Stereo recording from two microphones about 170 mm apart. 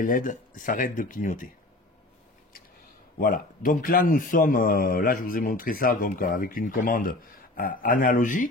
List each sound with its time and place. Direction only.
0.0 s speech: 50° left (ahead or behind)
3.2 s a man's voice: 55° left (ahead or behind)